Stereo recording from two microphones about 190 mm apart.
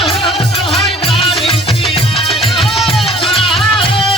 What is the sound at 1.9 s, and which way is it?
Music, 30° left (ahead or behind).